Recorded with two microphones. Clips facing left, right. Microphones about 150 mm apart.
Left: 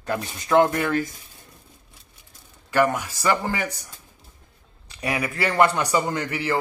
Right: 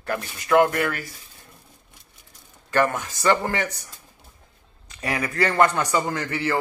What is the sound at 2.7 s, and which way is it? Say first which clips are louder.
A man's voice: left 1 dB; 10° left (ahead or behind).